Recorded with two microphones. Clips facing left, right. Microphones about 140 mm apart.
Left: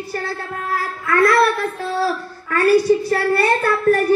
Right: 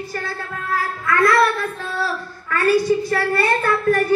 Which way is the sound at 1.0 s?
35° left (ahead or behind).